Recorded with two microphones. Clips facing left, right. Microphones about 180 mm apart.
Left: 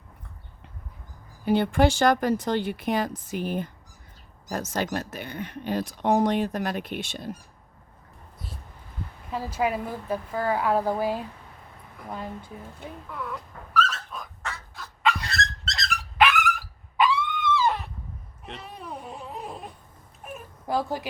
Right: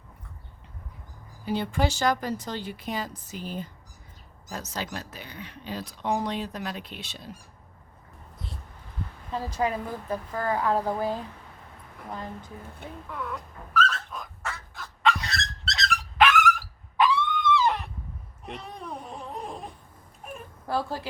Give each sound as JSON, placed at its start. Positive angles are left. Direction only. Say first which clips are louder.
{"t": 1.5, "sound": "speech", "louder": "left 6 dB", "side_deg": 60}
{"t": 9.3, "sound": "a woman's voice", "louder": "left 1 dB", "side_deg": 10}
{"t": 13.1, "sound": "bird", "louder": "right 1 dB", "side_deg": 0}
{"t": 17.0, "sound": "a sound", "louder": "even", "side_deg": 0}
{"t": 20.7, "sound": "a woman's voice", "louder": "left 2 dB", "side_deg": 15}